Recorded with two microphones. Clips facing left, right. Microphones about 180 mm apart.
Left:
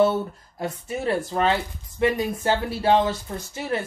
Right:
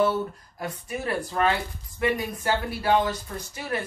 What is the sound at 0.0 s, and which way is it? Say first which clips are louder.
Speech: left 3 dB; 25° left (ahead or behind).